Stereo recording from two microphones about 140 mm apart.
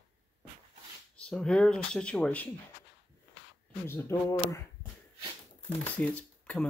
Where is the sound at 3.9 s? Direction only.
20° left (ahead or behind).